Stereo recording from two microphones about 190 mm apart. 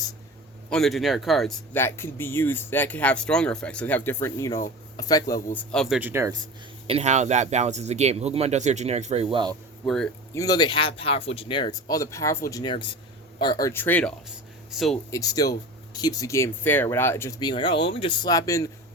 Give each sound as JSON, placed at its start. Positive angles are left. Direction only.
{"t": 0.7, "sound": "speech", "side_deg": 0}
{"t": 1.8, "sound": "speech", "side_deg": 10}
{"t": 6.0, "sound": "speech", "side_deg": -10}
{"t": 6.8, "sound": "speech", "side_deg": -35}
{"t": 9.8, "sound": "speech", "side_deg": 5}
{"t": 10.3, "sound": "speech", "side_deg": 20}
{"t": 15.1, "sound": "speech", "side_deg": 20}